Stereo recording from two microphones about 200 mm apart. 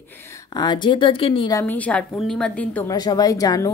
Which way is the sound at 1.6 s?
10° left (ahead or behind).